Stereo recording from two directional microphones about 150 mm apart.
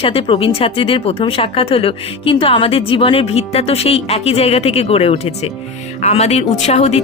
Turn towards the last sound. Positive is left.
turn(degrees=45)  # may be behind; listen again after turning